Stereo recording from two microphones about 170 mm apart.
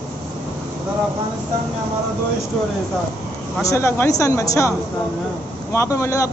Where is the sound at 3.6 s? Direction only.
15° left (ahead or behind).